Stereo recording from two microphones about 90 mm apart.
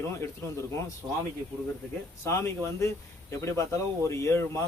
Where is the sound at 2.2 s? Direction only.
30° left (ahead or behind).